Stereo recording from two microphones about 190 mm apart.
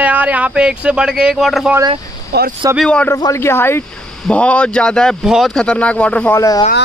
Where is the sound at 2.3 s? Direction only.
60° right (ahead or behind).